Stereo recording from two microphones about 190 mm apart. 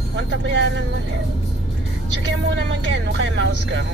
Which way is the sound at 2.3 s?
70° right (ahead or behind).